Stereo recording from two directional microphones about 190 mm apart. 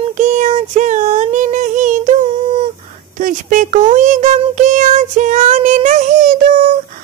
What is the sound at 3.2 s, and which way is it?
Speech, 45° right (ahead or behind).